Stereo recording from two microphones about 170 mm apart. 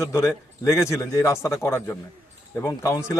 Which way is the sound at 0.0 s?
15° left (ahead or behind).